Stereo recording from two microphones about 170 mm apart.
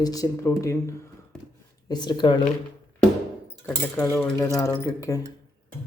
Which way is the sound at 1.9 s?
25° left (ahead or behind).